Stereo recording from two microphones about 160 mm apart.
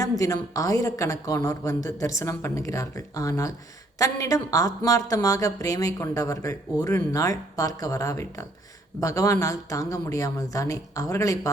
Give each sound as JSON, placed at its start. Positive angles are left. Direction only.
{"t": 0.2, "sound": "a woman's voice", "side_deg": 20}